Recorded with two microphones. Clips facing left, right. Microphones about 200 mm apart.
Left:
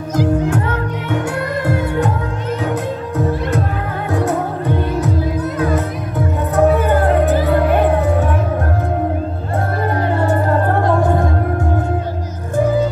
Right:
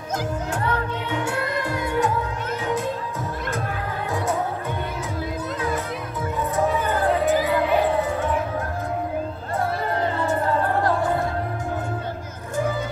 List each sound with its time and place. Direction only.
2.6 s music: 70° left (ahead or behind)
5.6 s music: 65° left (ahead or behind)
10.0 s music: 60° left (ahead or behind)